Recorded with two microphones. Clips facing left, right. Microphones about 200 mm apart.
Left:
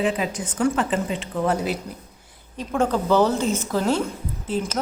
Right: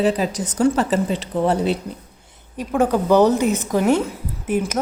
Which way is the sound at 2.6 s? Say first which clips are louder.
Right 4 dB; 10° right (ahead or behind).